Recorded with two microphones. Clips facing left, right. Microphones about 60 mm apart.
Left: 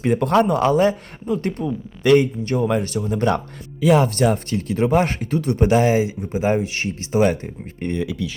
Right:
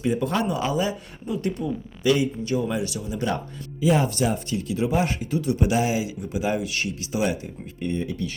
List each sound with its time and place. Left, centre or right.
0.0 s speech: left
7.8 s speech: left